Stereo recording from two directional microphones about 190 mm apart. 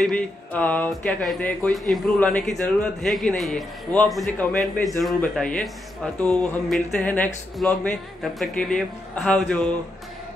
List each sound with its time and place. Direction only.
0.0 s speech: 5° left (ahead or behind)
6.2 s a sound: 5° left (ahead or behind)
7.5 s speech: 5° left (ahead or behind)